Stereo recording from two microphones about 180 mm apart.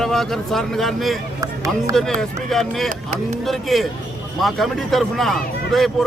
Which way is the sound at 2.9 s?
40° right (ahead or behind).